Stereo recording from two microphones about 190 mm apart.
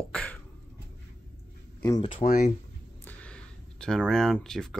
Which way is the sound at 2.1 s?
40° left (ahead or behind).